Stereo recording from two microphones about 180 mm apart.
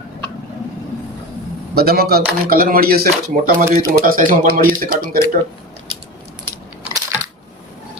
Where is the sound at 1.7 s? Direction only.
60° right (ahead or behind).